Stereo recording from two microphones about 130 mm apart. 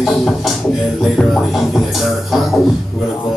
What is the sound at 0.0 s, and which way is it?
Music, centre (ahead or behind).